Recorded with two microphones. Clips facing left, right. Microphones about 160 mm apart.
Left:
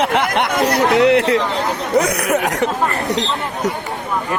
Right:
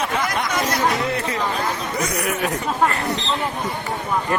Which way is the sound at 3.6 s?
80° left.